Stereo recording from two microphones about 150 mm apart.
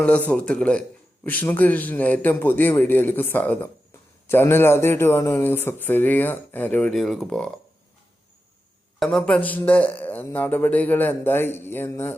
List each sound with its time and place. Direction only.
0.0 s a man's voice: 10° left (ahead or behind)
9.0 s a man's voice: 5° left (ahead or behind)